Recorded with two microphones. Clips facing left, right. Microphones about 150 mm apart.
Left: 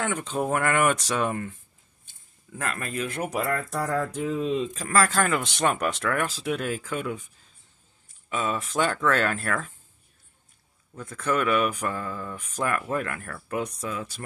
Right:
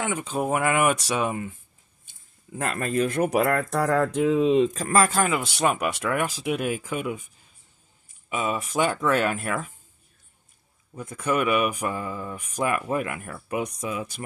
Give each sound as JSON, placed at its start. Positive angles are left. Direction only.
{"t": 0.0, "sound": "speech", "side_deg": -10}
{"t": 2.5, "sound": "speech", "side_deg": -25}
{"t": 3.3, "sound": "speech", "side_deg": -65}
{"t": 4.6, "sound": "speech", "side_deg": -40}
{"t": 4.9, "sound": "speech", "side_deg": -15}
{"t": 8.3, "sound": "speech", "side_deg": -10}
{"t": 11.0, "sound": "speech", "side_deg": -15}